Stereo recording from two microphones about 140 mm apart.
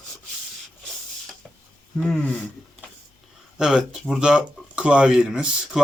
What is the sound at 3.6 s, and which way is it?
Speech, 5° right (ahead or behind).